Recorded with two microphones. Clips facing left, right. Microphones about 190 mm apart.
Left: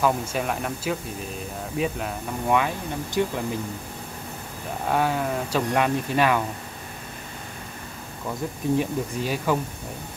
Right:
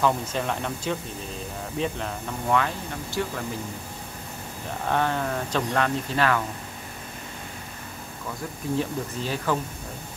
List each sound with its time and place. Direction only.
0.0 s speech: 10° left (ahead or behind)
4.8 s speech: 10° left (ahead or behind)
8.7 s speech: 10° left (ahead or behind)